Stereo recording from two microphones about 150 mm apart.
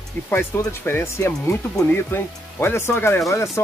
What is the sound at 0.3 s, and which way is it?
Speech, 15° left (ahead or behind).